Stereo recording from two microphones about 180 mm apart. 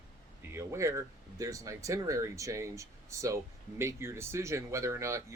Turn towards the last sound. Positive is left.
turn(degrees=-15)  # may be behind; listen again after turning